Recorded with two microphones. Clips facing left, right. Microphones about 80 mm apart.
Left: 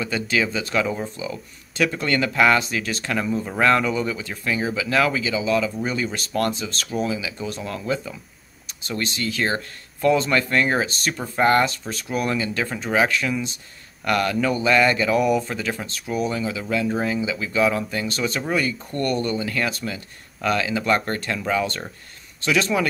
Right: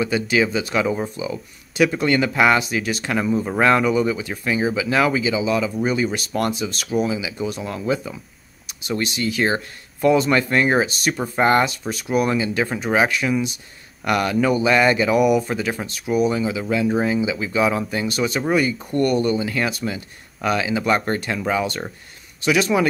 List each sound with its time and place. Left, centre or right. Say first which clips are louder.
0.0 s speech: right 4 dB; centre